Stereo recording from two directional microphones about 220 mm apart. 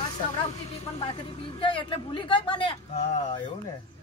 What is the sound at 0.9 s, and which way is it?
Speech, 25° left (ahead or behind).